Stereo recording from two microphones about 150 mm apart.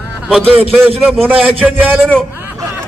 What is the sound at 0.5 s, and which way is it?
Speech, 40° right (ahead or behind).